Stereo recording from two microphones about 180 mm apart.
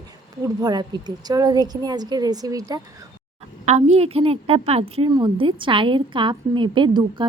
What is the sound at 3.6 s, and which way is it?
A woman's voice, 35° right (ahead or behind).